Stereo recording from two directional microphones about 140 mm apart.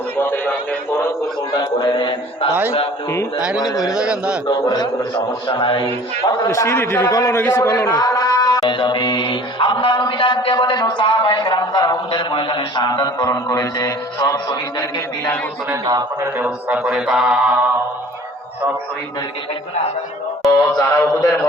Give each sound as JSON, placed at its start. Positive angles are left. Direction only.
{"t": 0.2, "sound": "a sound", "side_deg": 15}
{"t": 1.5, "sound": "music", "side_deg": 30}
{"t": 3.1, "sound": "a man's voice", "side_deg": 20}
{"t": 3.8, "sound": "speech", "side_deg": -5}
{"t": 4.4, "sound": "a man's voice", "side_deg": 30}
{"t": 6.2, "sound": "a man's voice", "side_deg": 25}
{"t": 15.7, "sound": "a man's voice", "side_deg": -25}
{"t": 16.4, "sound": "speech", "side_deg": -10}
{"t": 20.7, "sound": "a man's voice", "side_deg": 25}